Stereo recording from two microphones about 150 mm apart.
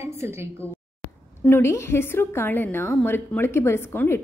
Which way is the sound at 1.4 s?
15° left (ahead or behind).